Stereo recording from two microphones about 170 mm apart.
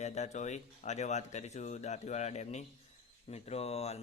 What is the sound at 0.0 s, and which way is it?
Speech, 40° left (ahead or behind).